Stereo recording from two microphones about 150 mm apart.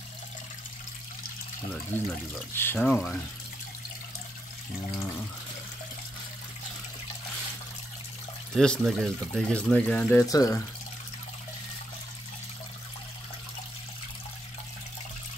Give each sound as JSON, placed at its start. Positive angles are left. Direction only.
{"t": 1.9, "sound": "speech", "side_deg": 10}
{"t": 2.8, "sound": "speech", "side_deg": 5}
{"t": 8.5, "sound": "speech", "side_deg": 5}
{"t": 10.2, "sound": "speech", "side_deg": 25}